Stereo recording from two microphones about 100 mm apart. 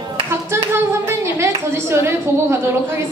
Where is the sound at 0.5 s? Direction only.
25° right (ahead or behind).